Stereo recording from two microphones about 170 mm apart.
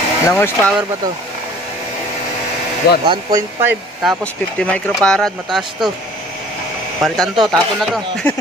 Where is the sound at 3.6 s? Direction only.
10° right (ahead or behind).